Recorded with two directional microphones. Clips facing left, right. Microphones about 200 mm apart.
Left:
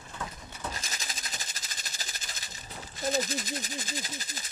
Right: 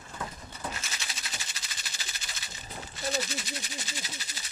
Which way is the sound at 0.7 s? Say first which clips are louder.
Left 1 dB; 40° left (ahead or behind).